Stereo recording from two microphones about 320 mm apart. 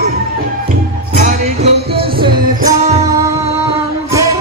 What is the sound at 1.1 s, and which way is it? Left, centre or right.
Music, right.